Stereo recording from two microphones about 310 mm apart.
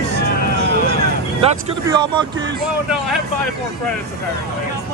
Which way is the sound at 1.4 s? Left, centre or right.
Centre.